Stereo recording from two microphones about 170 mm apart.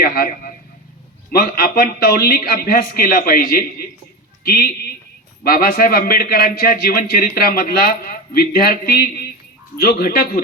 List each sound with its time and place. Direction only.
0.0 s a man's voice: 60° left (ahead or behind)